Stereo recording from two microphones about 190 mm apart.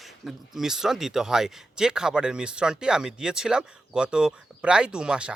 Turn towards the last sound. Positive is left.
turn(degrees=-5)  # may be behind; listen again after turning